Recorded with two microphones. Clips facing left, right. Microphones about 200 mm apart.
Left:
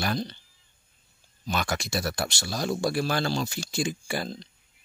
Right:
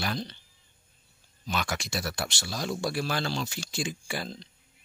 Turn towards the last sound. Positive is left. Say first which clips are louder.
# left 4 dB
turn(degrees=45)  # may be behind; listen again after turning